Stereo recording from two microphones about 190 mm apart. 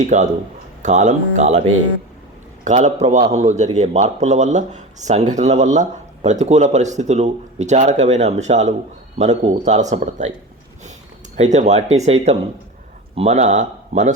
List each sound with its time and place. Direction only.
0.0 s a man's voice: 40° right (ahead or behind)
2.6 s a man's voice: 40° right (ahead or behind)
11.3 s a man's voice: 35° right (ahead or behind)